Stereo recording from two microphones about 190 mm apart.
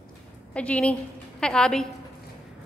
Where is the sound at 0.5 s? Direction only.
5° left (ahead or behind).